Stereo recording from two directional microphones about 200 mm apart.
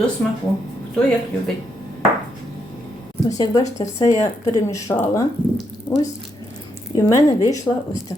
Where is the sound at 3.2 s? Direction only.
20° left (ahead or behind).